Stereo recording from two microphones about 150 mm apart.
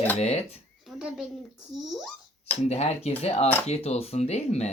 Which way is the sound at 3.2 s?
45° left (ahead or behind).